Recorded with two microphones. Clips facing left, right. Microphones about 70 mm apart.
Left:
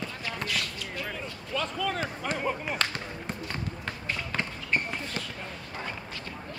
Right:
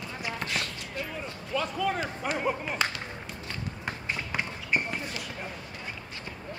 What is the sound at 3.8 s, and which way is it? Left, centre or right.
Basketball bounce, centre.